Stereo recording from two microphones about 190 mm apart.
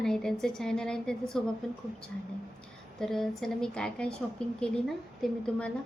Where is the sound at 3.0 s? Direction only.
Centre (ahead or behind).